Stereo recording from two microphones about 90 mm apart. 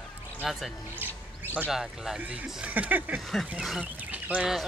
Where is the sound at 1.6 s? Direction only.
5° right (ahead or behind).